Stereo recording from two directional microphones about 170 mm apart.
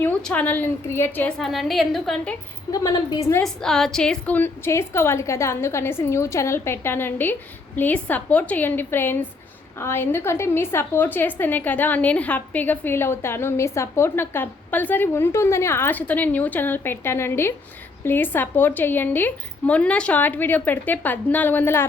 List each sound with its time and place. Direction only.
0.0 s a woman's voice: 10° left (ahead or behind)
1.5 s a woman's voice: centre (ahead or behind)
2.7 s a woman's voice: 20° left (ahead or behind)
3.4 s a woman's voice: centre (ahead or behind)